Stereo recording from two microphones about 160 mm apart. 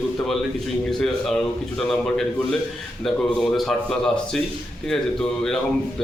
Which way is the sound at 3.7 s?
5° left (ahead or behind).